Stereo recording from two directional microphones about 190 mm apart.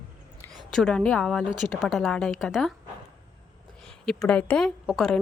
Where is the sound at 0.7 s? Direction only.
5° left (ahead or behind).